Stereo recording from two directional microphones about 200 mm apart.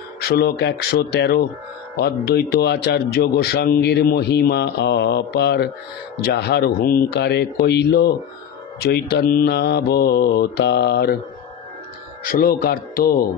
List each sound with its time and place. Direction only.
0.2 s speech: 55° left (ahead or behind)
12.3 s speech: 45° left (ahead or behind)